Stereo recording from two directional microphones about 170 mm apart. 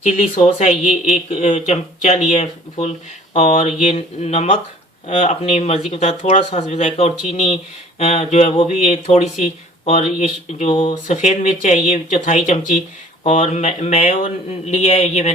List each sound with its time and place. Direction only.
0.0 s speech: 40° left (ahead or behind)